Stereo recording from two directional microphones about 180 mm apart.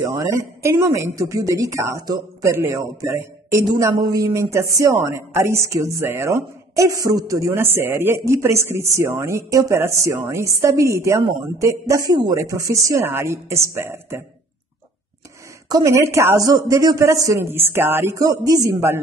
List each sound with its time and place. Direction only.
0.0 s a woman's voice: 15° right (ahead or behind)
15.7 s a woman's voice: 15° right (ahead or behind)